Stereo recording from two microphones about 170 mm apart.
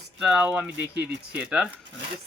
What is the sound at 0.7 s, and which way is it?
Speech, 90° right.